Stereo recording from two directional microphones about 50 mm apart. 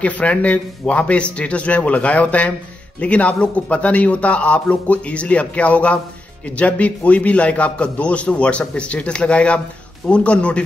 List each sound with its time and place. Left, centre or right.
0.0 s a man's voice: left